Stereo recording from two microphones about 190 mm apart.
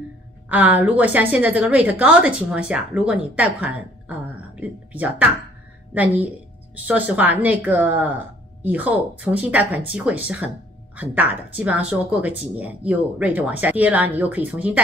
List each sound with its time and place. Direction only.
0.5 s a woman's voice: 10° right (ahead or behind)